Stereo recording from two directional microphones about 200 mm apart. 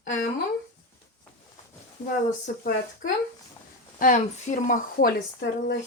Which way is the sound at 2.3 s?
40° left (ahead or behind).